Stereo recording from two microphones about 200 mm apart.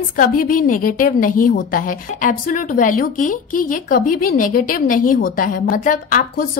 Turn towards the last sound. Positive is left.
turn(degrees=40)  # may be behind; listen again after turning